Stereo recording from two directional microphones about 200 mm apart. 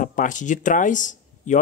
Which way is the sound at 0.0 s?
40° left (ahead or behind).